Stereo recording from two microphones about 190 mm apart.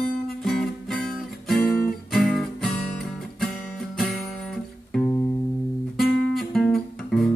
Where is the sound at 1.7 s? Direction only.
50° left (ahead or behind).